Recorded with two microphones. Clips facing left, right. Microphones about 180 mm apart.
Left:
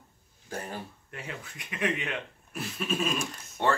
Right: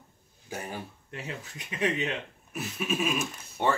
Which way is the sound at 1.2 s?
25° right (ahead or behind).